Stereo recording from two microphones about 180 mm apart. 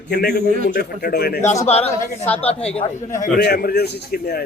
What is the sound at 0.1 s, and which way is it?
Speech, 60° left (ahead or behind).